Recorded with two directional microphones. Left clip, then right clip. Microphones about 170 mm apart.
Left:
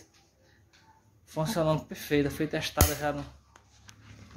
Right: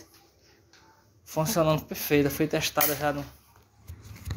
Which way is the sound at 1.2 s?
5° right (ahead or behind).